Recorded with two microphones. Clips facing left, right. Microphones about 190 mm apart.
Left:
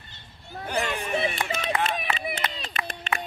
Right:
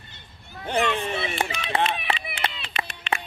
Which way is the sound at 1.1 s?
40° left (ahead or behind).